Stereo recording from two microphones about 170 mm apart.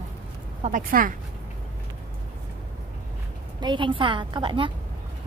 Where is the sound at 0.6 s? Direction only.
55° right (ahead or behind).